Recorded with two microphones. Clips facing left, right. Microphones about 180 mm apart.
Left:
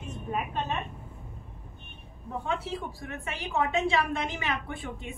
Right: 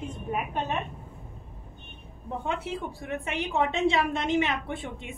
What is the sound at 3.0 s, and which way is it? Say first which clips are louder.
A woman's voice: right 5 dB; 20° right (ahead or behind).